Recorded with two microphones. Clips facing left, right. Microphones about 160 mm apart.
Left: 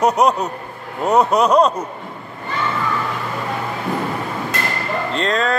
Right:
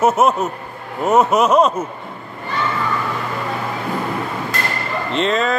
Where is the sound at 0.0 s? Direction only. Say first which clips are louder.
Right 1 dB; 5° right (ahead or behind).